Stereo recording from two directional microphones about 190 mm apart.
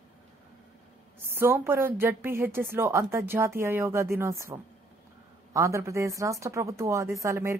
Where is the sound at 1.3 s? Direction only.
10° right (ahead or behind).